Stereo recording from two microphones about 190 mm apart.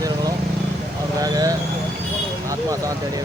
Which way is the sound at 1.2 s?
20° right (ahead or behind).